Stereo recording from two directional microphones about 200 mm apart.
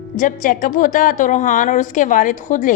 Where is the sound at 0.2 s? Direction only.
40° left (ahead or behind).